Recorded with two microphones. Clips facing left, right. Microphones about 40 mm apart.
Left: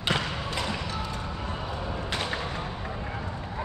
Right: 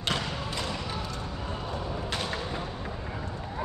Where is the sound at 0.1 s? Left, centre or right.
Left.